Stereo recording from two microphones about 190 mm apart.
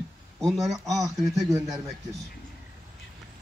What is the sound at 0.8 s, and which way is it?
Speech, 20° right (ahead or behind).